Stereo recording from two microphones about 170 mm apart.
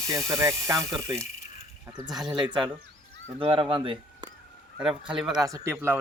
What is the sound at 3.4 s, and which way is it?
Speech, 30° right (ahead or behind).